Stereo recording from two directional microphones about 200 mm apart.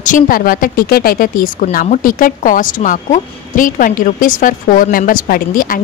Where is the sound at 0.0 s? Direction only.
45° left (ahead or behind).